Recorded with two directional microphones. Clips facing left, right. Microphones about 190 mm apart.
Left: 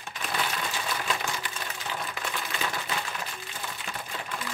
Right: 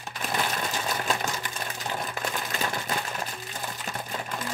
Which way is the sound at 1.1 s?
45° right (ahead or behind).